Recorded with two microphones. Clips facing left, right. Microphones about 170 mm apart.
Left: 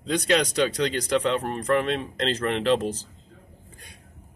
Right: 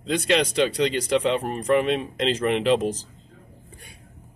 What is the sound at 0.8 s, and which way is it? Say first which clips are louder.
Speech: right 2 dB; 10° right (ahead or behind).